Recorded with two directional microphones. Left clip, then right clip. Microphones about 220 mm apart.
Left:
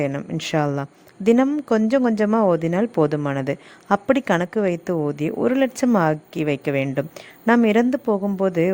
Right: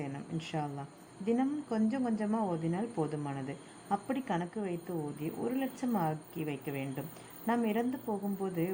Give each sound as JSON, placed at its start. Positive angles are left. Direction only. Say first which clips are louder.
{"t": 0.0, "sound": "speech", "louder": "left 16 dB", "side_deg": 50}